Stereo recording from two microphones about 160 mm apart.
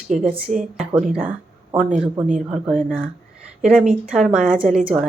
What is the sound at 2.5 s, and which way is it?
Speech, 5° right (ahead or behind).